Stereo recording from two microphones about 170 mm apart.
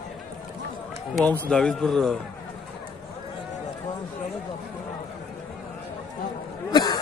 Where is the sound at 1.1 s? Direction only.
10° left (ahead or behind).